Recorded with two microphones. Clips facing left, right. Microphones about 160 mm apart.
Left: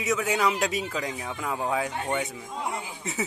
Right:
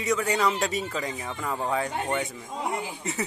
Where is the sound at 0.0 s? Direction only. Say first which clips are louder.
Right 1 dB; centre (ahead or behind).